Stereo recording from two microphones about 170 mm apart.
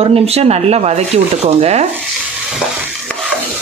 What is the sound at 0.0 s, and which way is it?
A woman's voice, 35° right (ahead or behind).